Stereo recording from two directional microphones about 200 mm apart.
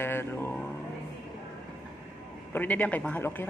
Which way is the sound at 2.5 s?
10° left (ahead or behind).